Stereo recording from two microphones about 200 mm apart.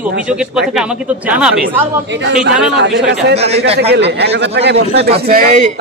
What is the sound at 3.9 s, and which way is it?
Speech, 60° right (ahead or behind).